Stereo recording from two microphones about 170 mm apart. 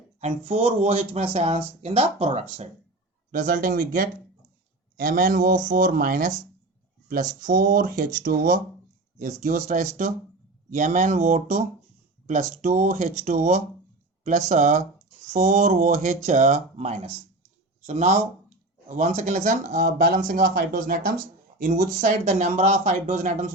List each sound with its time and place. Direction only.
0.2 s speech: 35° right (ahead or behind)
3.3 s speech: 55° right (ahead or behind)
7.4 s speech: 55° right (ahead or behind)